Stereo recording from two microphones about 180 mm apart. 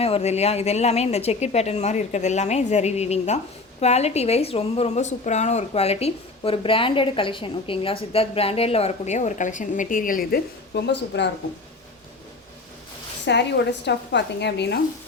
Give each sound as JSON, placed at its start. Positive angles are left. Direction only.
{"t": 0.0, "sound": "speech", "side_deg": 35}
{"t": 13.2, "sound": "a woman's voice", "side_deg": 70}